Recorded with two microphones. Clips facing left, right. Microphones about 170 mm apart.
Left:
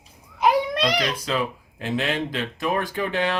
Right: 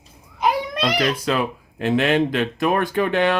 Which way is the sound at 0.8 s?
60° right (ahead or behind).